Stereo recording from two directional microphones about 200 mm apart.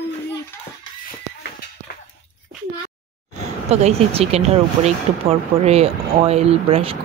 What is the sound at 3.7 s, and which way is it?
Speech, 30° right (ahead or behind).